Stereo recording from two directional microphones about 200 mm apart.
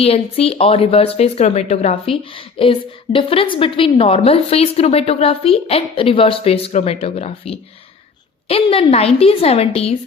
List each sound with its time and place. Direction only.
0.0 s a woman's voice: 30° left (ahead or behind)